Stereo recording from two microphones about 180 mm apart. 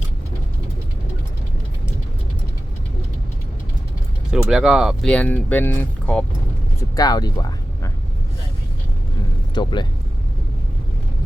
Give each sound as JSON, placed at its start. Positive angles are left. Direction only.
{"t": 4.4, "sound": "speech", "side_deg": -5}
{"t": 6.9, "sound": "speech", "side_deg": 20}
{"t": 9.6, "sound": "speech", "side_deg": 25}